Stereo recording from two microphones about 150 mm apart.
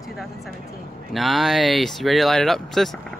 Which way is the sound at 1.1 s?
Centre (ahead or behind).